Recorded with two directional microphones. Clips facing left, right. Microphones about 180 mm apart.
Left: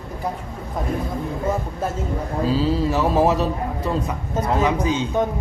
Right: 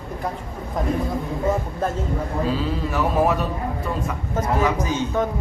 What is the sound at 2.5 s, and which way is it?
A man's voice, 30° left (ahead or behind).